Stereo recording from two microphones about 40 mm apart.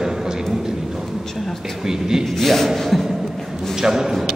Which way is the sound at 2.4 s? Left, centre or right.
Centre.